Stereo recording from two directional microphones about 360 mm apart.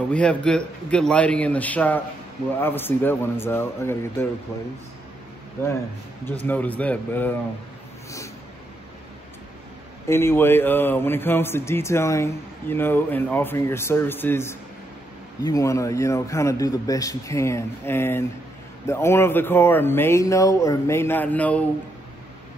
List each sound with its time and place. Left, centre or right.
0.1 s a man's voice: centre
6.2 s a man's voice: centre
10.0 s a man's voice: centre